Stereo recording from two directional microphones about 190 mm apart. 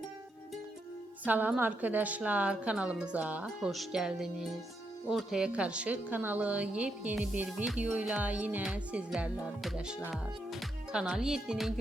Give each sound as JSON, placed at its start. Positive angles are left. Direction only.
{"t": 1.2, "sound": "a woman's voice", "side_deg": -10}
{"t": 9.1, "sound": "music", "side_deg": -5}
{"t": 10.1, "sound": "speech", "side_deg": 0}